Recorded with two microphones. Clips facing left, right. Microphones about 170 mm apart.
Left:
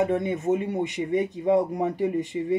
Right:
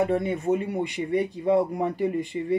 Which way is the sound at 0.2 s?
20° left (ahead or behind).